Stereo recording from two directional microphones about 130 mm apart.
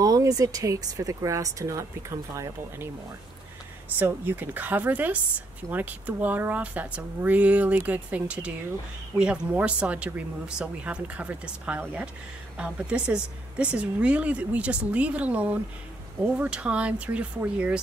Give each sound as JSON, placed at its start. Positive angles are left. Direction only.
{"t": 0.0, "sound": "speech", "side_deg": -25}
{"t": 4.0, "sound": "speech", "side_deg": -15}